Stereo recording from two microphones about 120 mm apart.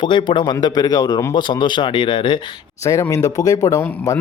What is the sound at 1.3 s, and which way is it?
A man's voice, 40° left (ahead or behind).